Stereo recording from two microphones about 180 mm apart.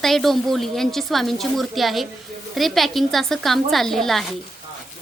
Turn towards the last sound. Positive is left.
turn(degrees=0)  # may be behind; listen again after turning